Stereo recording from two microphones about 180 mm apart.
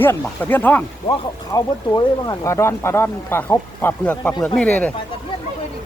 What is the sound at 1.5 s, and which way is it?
Speech, 20° left (ahead or behind).